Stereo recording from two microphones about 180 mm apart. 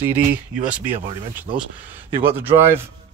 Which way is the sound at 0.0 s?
10° right (ahead or behind).